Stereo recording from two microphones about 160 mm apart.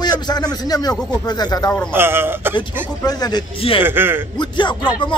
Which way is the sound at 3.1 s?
25° left (ahead or behind).